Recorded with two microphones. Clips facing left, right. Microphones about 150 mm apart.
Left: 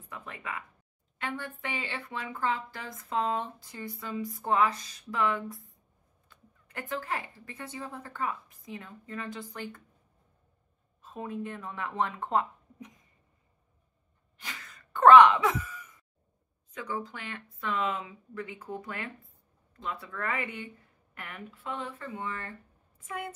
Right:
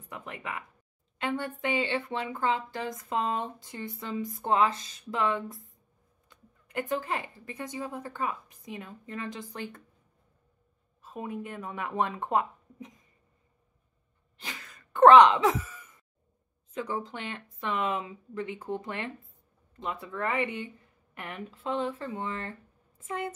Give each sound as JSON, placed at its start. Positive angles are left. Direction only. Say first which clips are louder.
{"t": 0.1, "sound": "speech", "louder": "right 2 dB", "side_deg": -20}
{"t": 11.0, "sound": "speech", "louder": "even", "side_deg": -15}
{"t": 14.5, "sound": "cough", "louder": "even", "side_deg": -20}
{"t": 16.7, "sound": "speech", "louder": "right 3 dB", "side_deg": -25}